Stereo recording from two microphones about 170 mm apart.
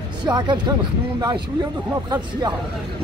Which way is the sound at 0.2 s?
25° right (ahead or behind).